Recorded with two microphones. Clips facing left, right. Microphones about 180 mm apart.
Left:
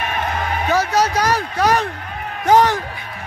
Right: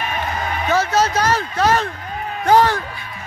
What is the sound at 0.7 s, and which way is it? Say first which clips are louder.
A man's voice: even; 15° left (ahead or behind).